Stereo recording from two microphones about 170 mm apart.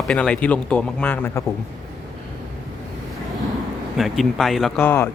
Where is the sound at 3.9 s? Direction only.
Centre (ahead or behind).